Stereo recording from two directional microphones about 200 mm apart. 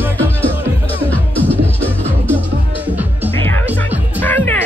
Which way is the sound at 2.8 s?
10° right (ahead or behind).